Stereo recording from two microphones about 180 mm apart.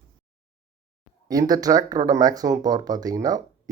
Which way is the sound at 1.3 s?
20° right (ahead or behind).